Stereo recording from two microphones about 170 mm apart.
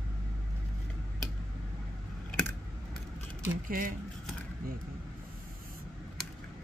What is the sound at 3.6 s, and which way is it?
Speech, 50° right (ahead or behind).